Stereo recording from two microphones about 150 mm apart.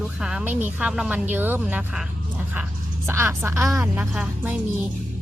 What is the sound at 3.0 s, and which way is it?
Speech, 15° right (ahead or behind).